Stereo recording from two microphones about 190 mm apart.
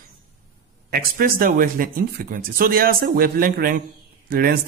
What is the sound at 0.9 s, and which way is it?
Speech, 50° right (ahead or behind).